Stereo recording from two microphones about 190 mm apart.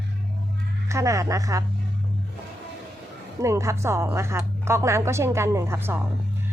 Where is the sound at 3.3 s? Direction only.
15° right (ahead or behind).